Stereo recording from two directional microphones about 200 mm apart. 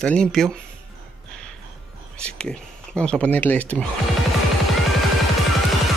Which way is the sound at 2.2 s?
5° left (ahead or behind).